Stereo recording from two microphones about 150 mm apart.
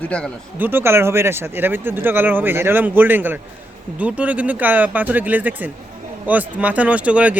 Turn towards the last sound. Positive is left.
turn(degrees=-10)  # may be behind; listen again after turning